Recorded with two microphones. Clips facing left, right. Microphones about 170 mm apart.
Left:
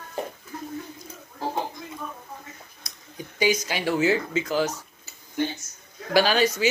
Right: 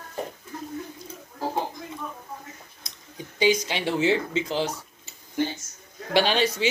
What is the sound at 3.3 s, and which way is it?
A man's voice, 25° right (ahead or behind).